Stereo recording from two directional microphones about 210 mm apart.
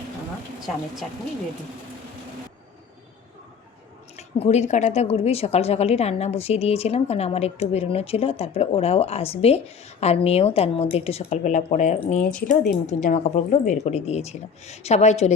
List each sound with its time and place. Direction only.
4.2 s a woman's voice: 30° left (ahead or behind)
12.2 s speech: 5° left (ahead or behind)
12.5 s a woman's voice: 35° left (ahead or behind)